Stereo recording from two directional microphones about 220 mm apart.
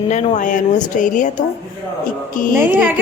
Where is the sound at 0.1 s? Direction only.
35° left (ahead or behind).